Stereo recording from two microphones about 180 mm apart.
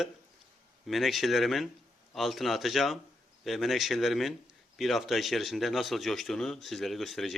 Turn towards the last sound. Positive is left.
turn(degrees=0)  # may be behind; listen again after turning